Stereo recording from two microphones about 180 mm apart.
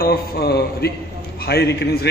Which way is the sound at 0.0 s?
60° left (ahead or behind).